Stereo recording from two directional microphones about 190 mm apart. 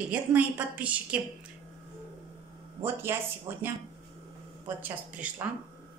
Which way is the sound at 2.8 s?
10° right (ahead or behind).